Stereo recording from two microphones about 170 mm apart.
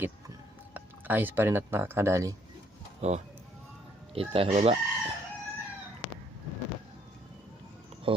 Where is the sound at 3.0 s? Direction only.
40° right (ahead or behind).